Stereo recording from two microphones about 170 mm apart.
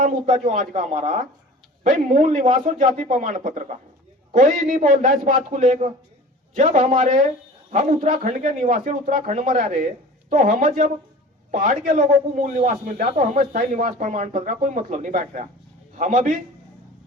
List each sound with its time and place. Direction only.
0.0 s speech: 45° right (ahead or behind)